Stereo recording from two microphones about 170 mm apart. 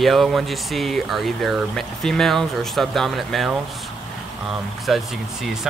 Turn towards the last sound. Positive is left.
turn(degrees=0)  # may be behind; listen again after turning